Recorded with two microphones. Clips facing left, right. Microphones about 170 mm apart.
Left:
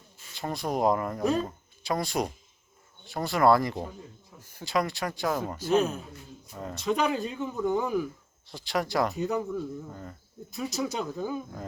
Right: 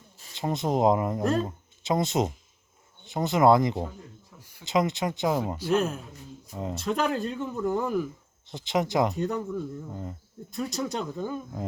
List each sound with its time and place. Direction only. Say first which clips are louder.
0.3 s speech: right 4 dB; 20° right (ahead or behind)
1.2 s speech: right 1 dB; centre (ahead or behind)
1.5 s speech: right 3 dB; 20° right (ahead or behind)
5.7 s speech: left 1 dB; centre (ahead or behind)
6.5 s speech: right 4 dB; 20° right (ahead or behind)
6.7 s speech: left 1 dB; centre (ahead or behind)
8.4 s speech: right 3 dB; 20° right (ahead or behind)
9.1 s speech: even; centre (ahead or behind)
9.9 s speech: right 4 dB; 20° right (ahead or behind)
10.5 s speech: right 1 dB; centre (ahead or behind)